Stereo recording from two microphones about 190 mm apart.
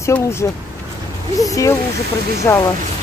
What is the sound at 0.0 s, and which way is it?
Speech, 15° left (ahead or behind).